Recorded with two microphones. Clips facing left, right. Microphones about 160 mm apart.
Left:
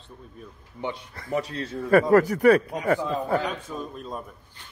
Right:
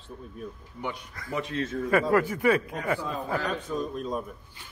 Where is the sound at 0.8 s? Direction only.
25° left (ahead or behind).